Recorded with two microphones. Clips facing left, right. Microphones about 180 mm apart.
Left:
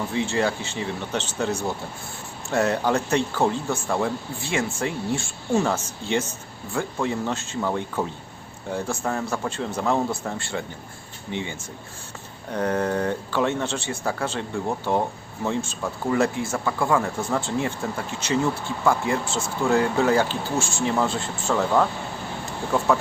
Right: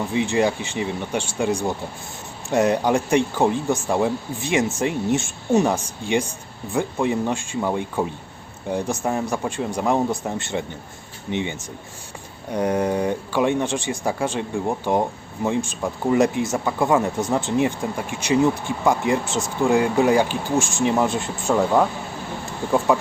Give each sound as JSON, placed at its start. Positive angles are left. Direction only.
{"t": 0.1, "sound": "speech", "side_deg": -15}
{"t": 22.9, "sound": "speech", "side_deg": -15}